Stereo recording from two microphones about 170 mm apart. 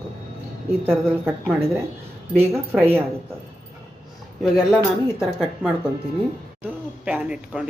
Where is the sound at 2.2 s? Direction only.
10° right (ahead or behind).